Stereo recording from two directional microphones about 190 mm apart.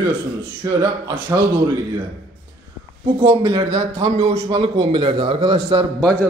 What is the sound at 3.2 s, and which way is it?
A man's voice, 25° right (ahead or behind).